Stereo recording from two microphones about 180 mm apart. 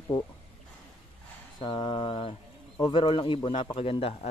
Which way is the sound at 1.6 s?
25° left (ahead or behind).